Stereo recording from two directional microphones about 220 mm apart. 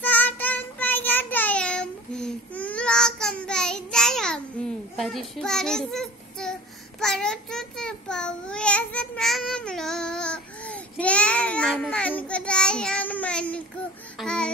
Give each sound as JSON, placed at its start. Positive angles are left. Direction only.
{"t": 0.0, "sound": "child singing", "side_deg": 5}
{"t": 7.0, "sound": "babbling", "side_deg": 0}
{"t": 14.2, "sound": "a sound", "side_deg": 5}